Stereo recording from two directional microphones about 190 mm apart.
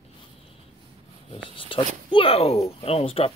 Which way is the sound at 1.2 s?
25° left (ahead or behind).